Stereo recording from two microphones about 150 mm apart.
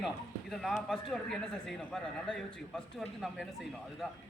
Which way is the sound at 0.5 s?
Centre (ahead or behind).